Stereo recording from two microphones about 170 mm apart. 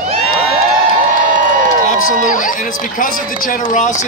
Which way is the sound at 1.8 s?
50° left (ahead or behind).